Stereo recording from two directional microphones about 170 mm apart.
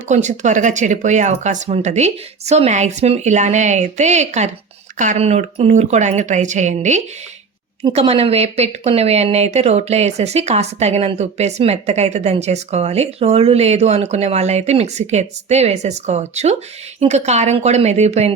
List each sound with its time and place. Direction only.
0.1 s speech: 45° right (ahead or behind)